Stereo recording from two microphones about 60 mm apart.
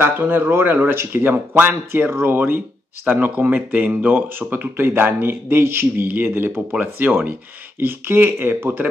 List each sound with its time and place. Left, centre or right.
0.0 s speech: right
6.7 s speech: right
7.8 s speech: right